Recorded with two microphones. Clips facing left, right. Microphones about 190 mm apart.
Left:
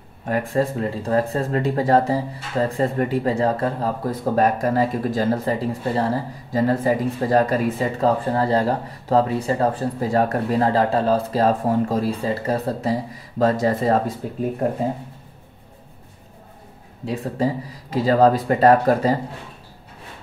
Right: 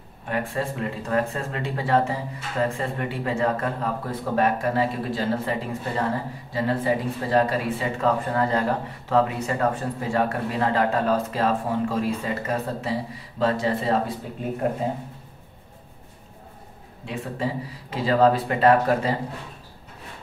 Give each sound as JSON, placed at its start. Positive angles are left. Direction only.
{"t": 0.2, "sound": "speech", "side_deg": 40}
{"t": 17.0, "sound": "speech", "side_deg": 40}